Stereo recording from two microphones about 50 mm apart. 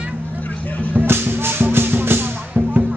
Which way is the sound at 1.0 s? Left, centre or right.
Right.